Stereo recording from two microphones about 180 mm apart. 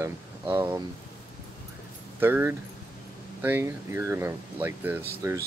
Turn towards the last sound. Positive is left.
turn(degrees=-10)  # may be behind; listen again after turning